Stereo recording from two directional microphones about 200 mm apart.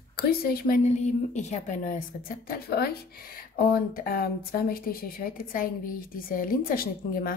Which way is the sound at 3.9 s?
45° left (ahead or behind).